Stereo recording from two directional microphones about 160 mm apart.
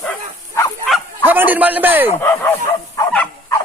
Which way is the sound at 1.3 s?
10° right (ahead or behind).